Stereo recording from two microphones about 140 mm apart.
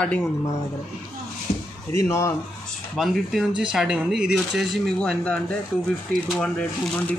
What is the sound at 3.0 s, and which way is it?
Speech, centre (ahead or behind).